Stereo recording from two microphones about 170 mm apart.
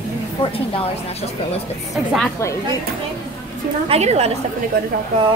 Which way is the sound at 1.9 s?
Centre (ahead or behind).